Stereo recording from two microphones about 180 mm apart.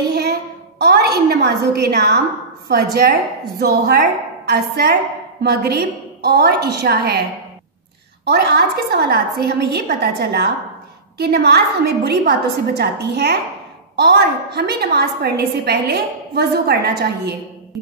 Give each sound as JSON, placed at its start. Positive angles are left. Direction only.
{"t": 0.1, "sound": "a sound", "side_deg": -65}
{"t": 1.3, "sound": "a woman's voice", "side_deg": -60}
{"t": 3.5, "sound": "a woman's voice", "side_deg": -65}
{"t": 8.3, "sound": "a woman's voice", "side_deg": -65}